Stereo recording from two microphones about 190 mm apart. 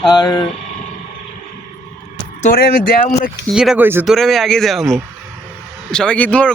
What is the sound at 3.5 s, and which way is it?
Speech, 5° right (ahead or behind).